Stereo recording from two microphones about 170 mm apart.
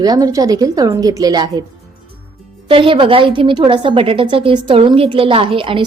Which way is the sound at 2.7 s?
30° right (ahead or behind).